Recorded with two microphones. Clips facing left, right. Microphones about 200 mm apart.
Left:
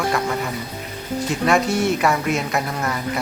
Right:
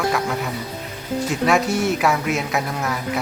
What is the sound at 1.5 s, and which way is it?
Speech, centre (ahead or behind).